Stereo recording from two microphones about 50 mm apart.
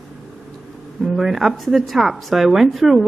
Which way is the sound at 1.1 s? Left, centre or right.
Centre.